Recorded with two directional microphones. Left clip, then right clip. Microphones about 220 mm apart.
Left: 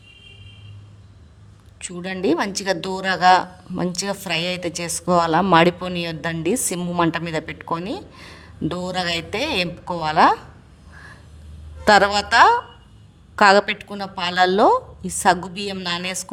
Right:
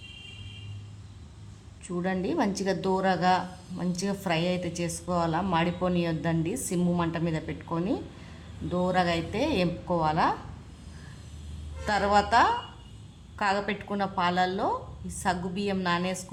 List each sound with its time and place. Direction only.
2.0 s a man's voice: 45° left (ahead or behind)
11.9 s a man's voice: 45° left (ahead or behind)
13.8 s speech: centre (ahead or behind)
14.2 s a man's voice: 45° left (ahead or behind)